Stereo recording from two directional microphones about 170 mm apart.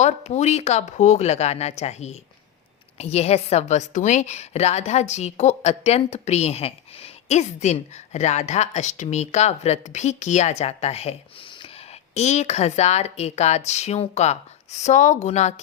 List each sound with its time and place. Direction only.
0.0 s a woman's voice: 40° left (ahead or behind)